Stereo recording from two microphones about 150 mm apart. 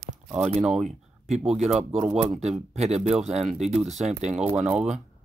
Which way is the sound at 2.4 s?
45° right (ahead or behind).